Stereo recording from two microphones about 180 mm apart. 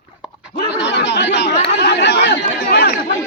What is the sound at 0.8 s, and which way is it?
Chatter, 70° left (ahead or behind).